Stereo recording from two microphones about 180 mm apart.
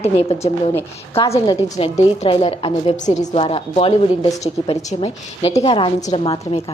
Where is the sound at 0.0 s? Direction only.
35° left (ahead or behind).